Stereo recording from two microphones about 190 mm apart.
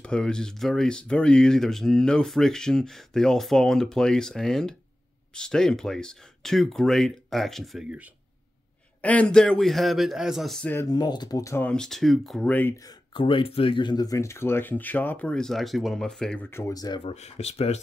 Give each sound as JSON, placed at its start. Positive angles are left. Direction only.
{"t": 0.0, "sound": "speech", "side_deg": 5}
{"t": 13.1, "sound": "speech", "side_deg": 25}
{"t": 17.1, "sound": "speech", "side_deg": 35}